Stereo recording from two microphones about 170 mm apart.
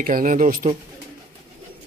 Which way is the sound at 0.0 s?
55° right (ahead or behind).